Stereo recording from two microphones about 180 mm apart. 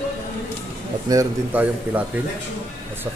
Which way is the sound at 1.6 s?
10° right (ahead or behind).